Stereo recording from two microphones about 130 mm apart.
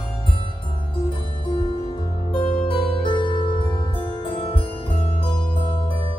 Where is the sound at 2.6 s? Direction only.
45° left (ahead or behind).